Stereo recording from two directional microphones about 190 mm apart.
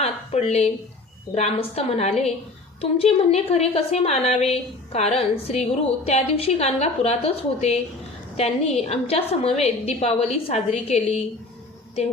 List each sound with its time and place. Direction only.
0.0 s a woman's voice: 35° left (ahead or behind)